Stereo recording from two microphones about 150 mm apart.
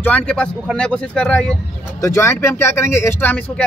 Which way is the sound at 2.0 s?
15° left (ahead or behind).